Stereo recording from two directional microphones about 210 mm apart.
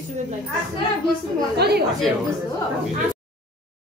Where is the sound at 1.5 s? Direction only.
50° right (ahead or behind).